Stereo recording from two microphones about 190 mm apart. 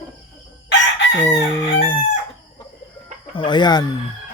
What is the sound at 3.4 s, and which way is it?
Speech, 25° left (ahead or behind).